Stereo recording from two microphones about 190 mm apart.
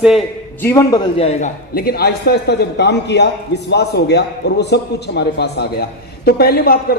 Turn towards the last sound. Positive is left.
turn(degrees=55)  # may be behind; listen again after turning